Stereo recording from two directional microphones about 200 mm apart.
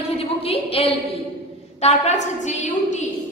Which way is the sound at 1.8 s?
35° left (ahead or behind).